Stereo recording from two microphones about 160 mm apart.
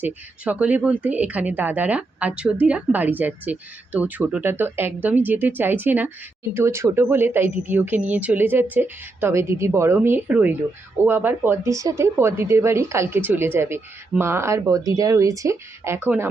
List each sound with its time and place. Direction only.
0.0 s speech: 10° right (ahead or behind)